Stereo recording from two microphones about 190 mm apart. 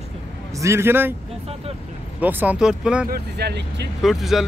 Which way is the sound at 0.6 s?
15° right (ahead or behind).